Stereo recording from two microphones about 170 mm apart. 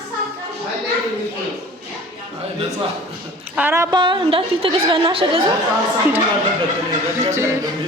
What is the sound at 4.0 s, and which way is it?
Speech, 30° right (ahead or behind).